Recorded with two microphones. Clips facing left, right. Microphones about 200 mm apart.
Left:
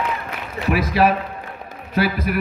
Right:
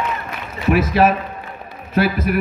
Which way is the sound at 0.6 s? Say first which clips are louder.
Right 3 dB; 45° right (ahead or behind).